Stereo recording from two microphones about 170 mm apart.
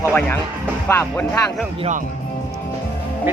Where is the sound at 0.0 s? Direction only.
10° left (ahead or behind).